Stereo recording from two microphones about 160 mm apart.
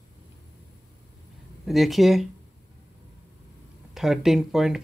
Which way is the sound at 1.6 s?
Centre (ahead or behind).